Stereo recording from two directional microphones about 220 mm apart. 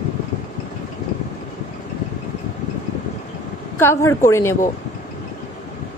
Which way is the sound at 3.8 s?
10° left (ahead or behind).